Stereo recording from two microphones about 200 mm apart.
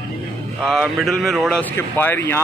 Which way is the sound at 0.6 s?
5° left (ahead or behind).